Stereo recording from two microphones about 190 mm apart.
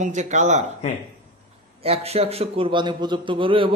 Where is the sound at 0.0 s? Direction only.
40° right (ahead or behind).